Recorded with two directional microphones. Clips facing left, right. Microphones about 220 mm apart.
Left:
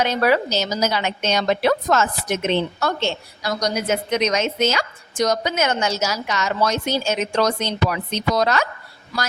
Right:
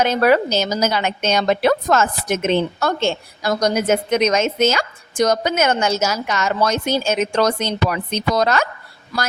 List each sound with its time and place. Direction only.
0.0 s a woman's voice: 50° right (ahead or behind)